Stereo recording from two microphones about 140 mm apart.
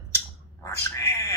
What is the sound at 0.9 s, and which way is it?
Cat, 20° left (ahead or behind).